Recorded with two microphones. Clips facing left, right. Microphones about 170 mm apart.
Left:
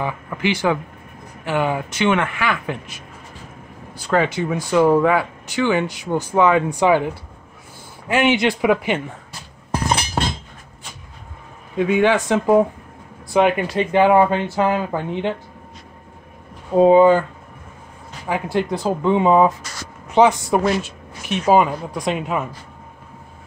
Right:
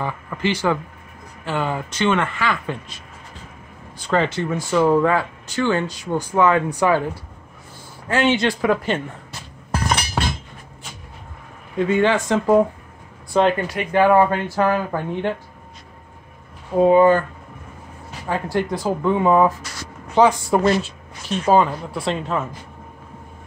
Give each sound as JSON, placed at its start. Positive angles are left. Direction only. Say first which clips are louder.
{"t": 0.0, "sound": "speech", "louder": "left 1 dB", "side_deg": 15}
{"t": 4.0, "sound": "speech", "louder": "left 1 dB", "side_deg": 5}
{"t": 8.1, "sound": "speech", "louder": "left 1 dB", "side_deg": 15}
{"t": 11.7, "sound": "speech", "louder": "left 1 dB", "side_deg": 10}
{"t": 16.7, "sound": "speech", "louder": "left 2 dB", "side_deg": 20}
{"t": 18.5, "sound": "speech", "louder": "left 1 dB", "side_deg": 20}